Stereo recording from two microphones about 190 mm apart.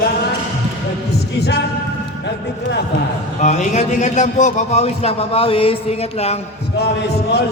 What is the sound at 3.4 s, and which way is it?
A man's voice, 40° left (ahead or behind).